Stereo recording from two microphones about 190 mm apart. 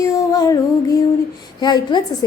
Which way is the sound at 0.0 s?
20° left (ahead or behind).